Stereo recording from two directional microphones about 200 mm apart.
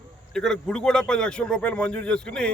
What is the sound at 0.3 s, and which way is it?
Speech, 5° left (ahead or behind).